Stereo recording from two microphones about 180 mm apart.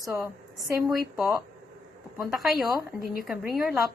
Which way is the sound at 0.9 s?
Centre (ahead or behind).